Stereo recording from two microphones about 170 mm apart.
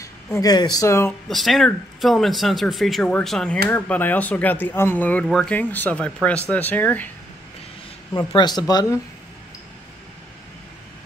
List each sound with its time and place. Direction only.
0.0 s speech: 20° left (ahead or behind)
1.3 s speech: centre (ahead or behind)
8.1 s speech: 20° left (ahead or behind)